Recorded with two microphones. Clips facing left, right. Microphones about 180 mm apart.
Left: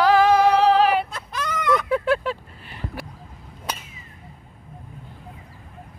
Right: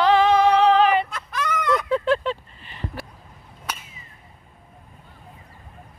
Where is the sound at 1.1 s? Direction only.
30° left (ahead or behind).